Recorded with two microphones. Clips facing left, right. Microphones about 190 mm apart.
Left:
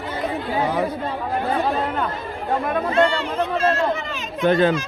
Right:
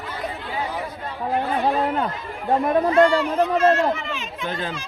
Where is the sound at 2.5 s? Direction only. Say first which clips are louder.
Right 4 dB; 35° right (ahead or behind).